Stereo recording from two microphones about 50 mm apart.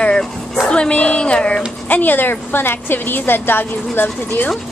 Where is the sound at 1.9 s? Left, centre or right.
Left.